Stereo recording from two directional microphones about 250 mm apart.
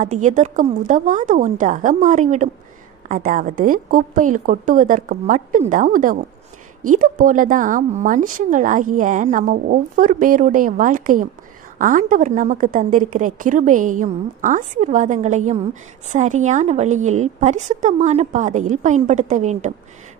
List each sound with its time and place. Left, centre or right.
0.0 s a woman's voice: right